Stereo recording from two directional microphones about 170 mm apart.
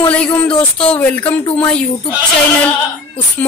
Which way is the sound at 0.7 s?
10° left (ahead or behind).